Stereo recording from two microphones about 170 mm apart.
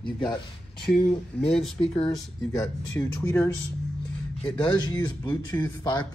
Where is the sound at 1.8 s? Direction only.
35° left (ahead or behind).